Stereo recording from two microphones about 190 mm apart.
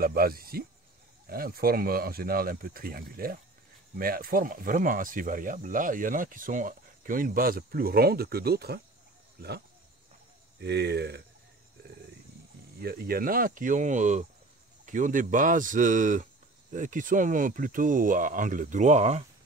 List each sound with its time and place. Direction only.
0.0 s speech: 50° right (ahead or behind)
10.6 s speech: 60° right (ahead or behind)
12.8 s speech: 55° right (ahead or behind)